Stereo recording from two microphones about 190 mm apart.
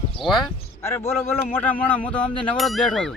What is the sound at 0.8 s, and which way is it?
A man's voice, 15° left (ahead or behind).